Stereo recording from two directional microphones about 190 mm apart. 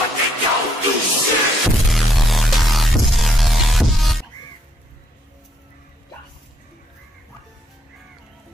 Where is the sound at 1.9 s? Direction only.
Centre (ahead or behind).